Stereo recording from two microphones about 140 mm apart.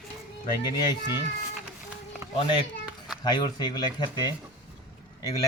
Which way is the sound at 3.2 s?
30° left (ahead or behind).